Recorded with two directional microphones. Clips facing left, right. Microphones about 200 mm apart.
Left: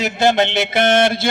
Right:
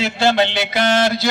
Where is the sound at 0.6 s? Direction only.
55° left (ahead or behind).